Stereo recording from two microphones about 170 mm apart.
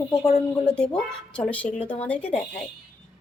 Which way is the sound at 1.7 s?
30° left (ahead or behind).